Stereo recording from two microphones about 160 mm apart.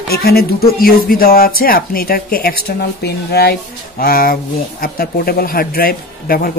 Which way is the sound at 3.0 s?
90° left.